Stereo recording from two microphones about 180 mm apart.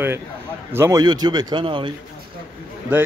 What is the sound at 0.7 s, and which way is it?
Speech, 15° right (ahead or behind).